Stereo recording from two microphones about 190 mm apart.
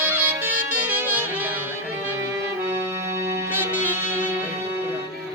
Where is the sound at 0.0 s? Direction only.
10° right (ahead or behind).